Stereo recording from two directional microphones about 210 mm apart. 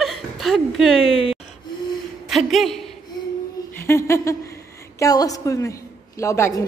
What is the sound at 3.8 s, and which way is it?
A woman's voice, 15° left (ahead or behind).